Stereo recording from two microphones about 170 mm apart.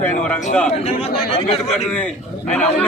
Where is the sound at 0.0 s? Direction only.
10° left (ahead or behind).